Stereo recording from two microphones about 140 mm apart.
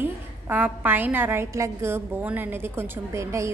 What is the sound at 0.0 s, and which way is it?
A woman's voice, 15° right (ahead or behind).